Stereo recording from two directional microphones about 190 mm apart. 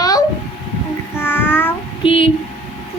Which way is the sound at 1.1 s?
10° left (ahead or behind).